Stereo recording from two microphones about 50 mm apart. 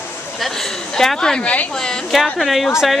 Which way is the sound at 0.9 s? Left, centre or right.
Centre.